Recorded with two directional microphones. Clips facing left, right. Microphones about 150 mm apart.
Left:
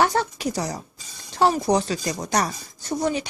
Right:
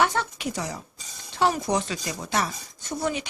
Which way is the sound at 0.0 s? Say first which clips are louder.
Left 3 dB; 35° left (ahead or behind).